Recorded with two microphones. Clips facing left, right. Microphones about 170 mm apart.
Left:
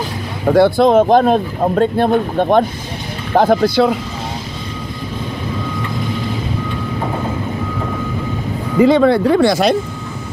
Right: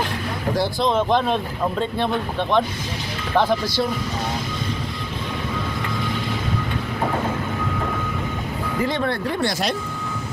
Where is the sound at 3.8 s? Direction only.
90° left.